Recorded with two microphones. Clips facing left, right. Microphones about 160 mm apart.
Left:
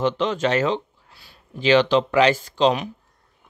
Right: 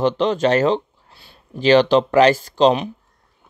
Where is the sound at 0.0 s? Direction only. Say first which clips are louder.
Right 4 dB; 35° right (ahead or behind).